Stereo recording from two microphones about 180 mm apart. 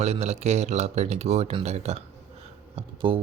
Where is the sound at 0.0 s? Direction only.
35° right (ahead or behind).